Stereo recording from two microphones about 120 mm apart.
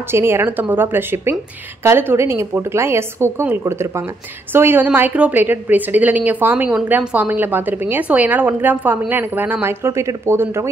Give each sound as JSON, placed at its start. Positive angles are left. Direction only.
{"t": 0.1, "sound": "a woman's voice", "side_deg": -20}